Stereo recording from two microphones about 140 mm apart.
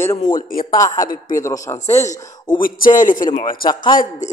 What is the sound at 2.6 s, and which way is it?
Speech, 75° left (ahead or behind).